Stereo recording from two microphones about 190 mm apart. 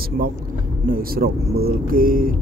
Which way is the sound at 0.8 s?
50° right (ahead or behind).